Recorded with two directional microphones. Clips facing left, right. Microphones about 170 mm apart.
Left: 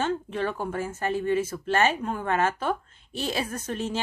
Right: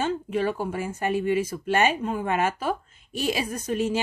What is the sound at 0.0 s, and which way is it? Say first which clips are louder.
A woman's voice: right 2 dB; 10° right (ahead or behind).